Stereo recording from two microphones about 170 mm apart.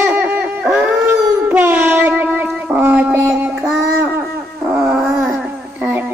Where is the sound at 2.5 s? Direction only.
5° right (ahead or behind).